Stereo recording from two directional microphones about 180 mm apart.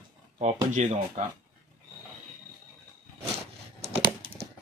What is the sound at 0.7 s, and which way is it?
Speech, 40° right (ahead or behind).